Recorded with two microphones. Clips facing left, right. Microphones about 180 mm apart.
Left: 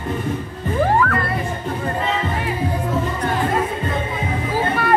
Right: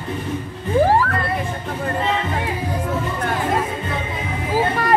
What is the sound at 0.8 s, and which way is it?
Music, 30° right (ahead or behind).